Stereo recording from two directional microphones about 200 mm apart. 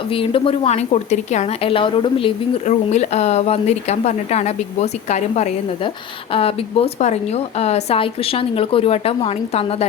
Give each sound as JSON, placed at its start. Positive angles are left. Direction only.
{"t": 0.1, "sound": "a woman's voice", "side_deg": 25}